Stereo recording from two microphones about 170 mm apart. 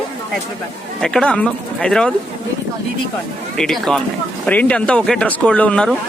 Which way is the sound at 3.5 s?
5° left (ahead or behind).